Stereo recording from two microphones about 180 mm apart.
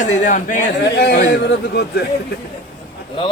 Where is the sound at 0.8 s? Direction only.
60° left (ahead or behind).